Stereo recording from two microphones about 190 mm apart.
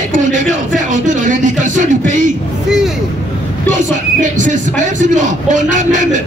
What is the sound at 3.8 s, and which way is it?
Speech, 40° right (ahead or behind).